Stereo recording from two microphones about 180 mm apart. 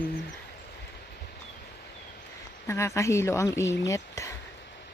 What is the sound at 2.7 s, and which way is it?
A woman's voice, 15° left (ahead or behind).